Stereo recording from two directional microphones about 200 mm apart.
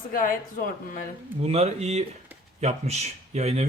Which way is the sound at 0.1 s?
45° left (ahead or behind).